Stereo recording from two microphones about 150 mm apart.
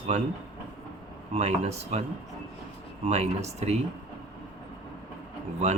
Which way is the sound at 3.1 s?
45° right (ahead or behind).